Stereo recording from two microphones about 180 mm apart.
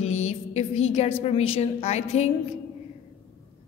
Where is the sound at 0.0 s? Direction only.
40° left (ahead or behind).